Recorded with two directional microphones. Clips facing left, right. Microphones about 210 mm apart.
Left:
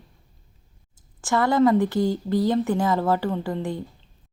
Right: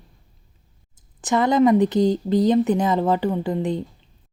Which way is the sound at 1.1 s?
20° right (ahead or behind).